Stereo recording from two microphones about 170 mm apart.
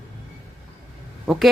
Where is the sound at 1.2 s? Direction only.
Centre (ahead or behind).